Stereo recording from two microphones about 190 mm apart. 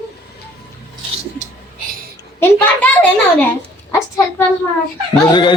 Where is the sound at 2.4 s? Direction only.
10° left (ahead or behind).